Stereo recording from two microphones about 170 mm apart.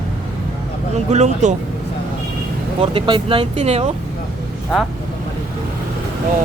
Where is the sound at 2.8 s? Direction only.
30° right (ahead or behind).